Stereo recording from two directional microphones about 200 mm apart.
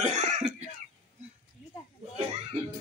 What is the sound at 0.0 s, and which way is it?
Cough, 35° right (ahead or behind).